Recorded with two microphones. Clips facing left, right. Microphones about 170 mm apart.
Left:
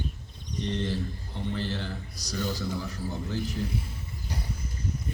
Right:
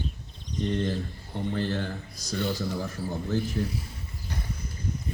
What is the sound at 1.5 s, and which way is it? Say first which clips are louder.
Speech: right 5 dB; 50° right (ahead or behind).